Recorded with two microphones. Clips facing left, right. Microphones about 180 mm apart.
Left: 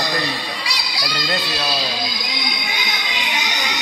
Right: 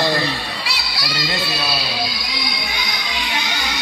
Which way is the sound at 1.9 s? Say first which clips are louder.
Right 1 dB; centre (ahead or behind).